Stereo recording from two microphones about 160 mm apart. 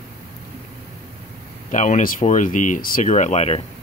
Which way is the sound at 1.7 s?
50° left (ahead or behind).